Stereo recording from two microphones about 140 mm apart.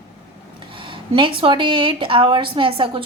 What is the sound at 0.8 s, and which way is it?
A woman's voice, 35° right (ahead or behind).